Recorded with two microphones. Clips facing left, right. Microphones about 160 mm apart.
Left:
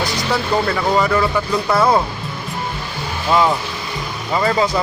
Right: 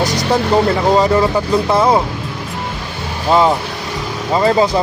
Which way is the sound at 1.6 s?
20° right (ahead or behind).